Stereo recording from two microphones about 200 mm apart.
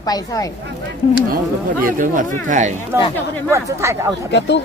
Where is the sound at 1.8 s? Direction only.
45° right (ahead or behind).